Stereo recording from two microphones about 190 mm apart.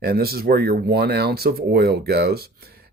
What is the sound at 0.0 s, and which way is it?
Speech, 55° right (ahead or behind).